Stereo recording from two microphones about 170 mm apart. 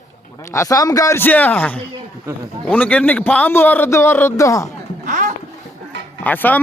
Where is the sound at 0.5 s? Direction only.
20° left (ahead or behind).